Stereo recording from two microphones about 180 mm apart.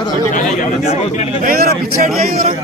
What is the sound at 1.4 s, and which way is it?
A man's voice, 55° right (ahead or behind).